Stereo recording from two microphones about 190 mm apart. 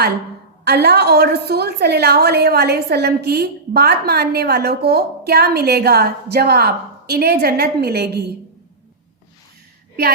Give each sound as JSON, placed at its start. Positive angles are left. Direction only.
{"t": 0.6, "sound": "a woman's voice", "side_deg": -55}